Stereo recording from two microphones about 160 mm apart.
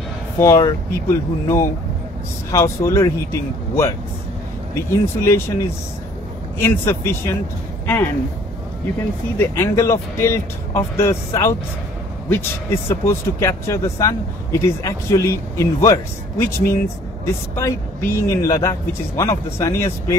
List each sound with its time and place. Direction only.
0.4 s speech: 20° left (ahead or behind)
4.7 s speech: 15° left (ahead or behind)
9.4 s speech: 15° left (ahead or behind)